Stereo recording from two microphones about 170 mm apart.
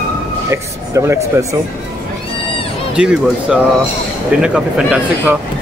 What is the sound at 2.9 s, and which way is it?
Speech, 5° right (ahead or behind).